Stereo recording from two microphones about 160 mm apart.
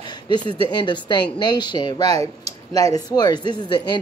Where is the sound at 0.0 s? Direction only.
25° left (ahead or behind).